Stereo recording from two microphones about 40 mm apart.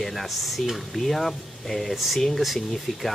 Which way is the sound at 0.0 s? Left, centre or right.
Centre.